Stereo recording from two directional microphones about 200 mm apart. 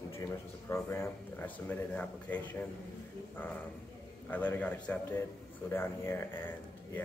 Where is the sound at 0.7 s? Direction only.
10° left (ahead or behind).